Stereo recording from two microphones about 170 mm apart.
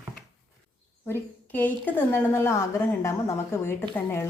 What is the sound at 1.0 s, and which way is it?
A woman's voice, 10° left (ahead or behind).